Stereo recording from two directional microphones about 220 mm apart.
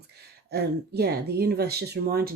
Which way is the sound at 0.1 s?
45° right (ahead or behind).